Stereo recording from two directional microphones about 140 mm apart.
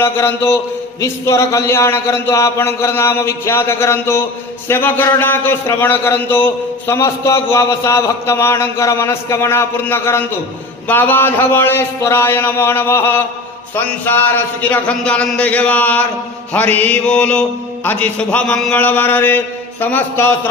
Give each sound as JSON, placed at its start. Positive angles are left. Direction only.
{"t": 0.0, "sound": "a man's voice", "side_deg": 15}